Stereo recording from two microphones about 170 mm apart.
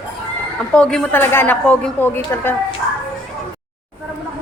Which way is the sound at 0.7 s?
5° left (ahead or behind).